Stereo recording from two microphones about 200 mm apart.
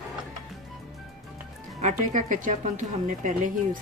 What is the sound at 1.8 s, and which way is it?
Speech, 40° right (ahead or behind).